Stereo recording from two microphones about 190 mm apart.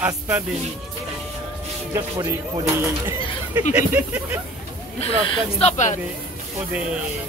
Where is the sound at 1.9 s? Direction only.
20° right (ahead or behind).